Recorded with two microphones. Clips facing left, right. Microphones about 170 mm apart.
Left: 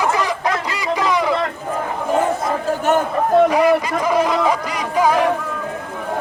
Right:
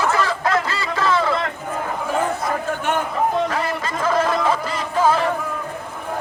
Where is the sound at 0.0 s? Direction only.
15° left (ahead or behind).